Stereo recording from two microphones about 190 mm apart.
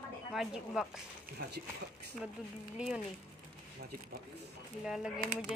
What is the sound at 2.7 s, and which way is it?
Speech, 5° right (ahead or behind).